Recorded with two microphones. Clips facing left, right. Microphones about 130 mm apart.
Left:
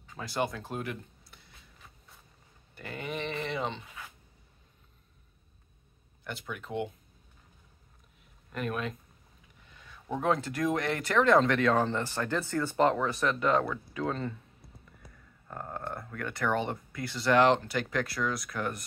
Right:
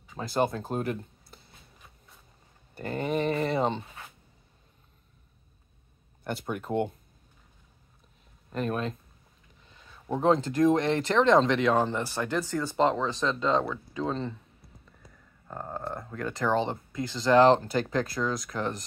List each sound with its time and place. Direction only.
0.4 s speech: 40° right (ahead or behind)
2.7 s speech: 40° right (ahead or behind)
6.2 s speech: 45° right (ahead or behind)
8.5 s speech: 30° right (ahead or behind)
10.2 s speech: 25° right (ahead or behind)
15.4 s a sound: 10° right (ahead or behind)
15.8 s speech: 20° right (ahead or behind)